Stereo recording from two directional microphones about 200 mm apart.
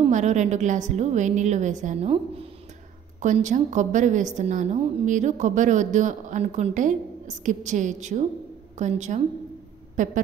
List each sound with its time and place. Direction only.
0.0 s a woman's voice: 35° right (ahead or behind)